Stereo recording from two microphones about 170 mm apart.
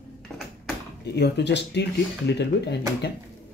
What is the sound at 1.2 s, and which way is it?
Speech, 85° left.